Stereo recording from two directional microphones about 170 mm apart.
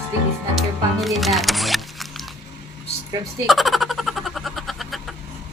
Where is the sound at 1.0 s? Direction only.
Centre (ahead or behind).